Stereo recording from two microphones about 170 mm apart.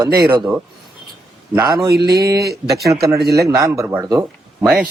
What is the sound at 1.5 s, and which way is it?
Speech, 25° right (ahead or behind).